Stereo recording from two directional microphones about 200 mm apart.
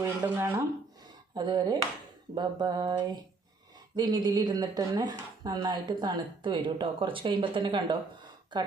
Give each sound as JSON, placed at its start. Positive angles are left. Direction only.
{"t": 0.0, "sound": "speech", "side_deg": -15}